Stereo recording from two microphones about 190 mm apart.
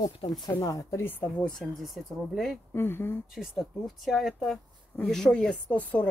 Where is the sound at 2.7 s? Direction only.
10° left (ahead or behind).